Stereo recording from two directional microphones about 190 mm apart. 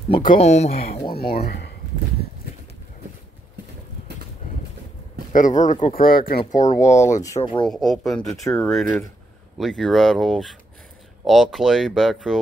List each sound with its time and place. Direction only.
0.3 s speech: 35° left (ahead or behind)
1.1 s speech: 55° left (ahead or behind)
5.3 s speech: 40° left (ahead or behind)
7.1 s speech: 15° left (ahead or behind)
7.6 s speech: centre (ahead or behind)